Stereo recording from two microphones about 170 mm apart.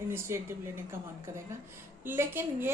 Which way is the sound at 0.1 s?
15° right (ahead or behind).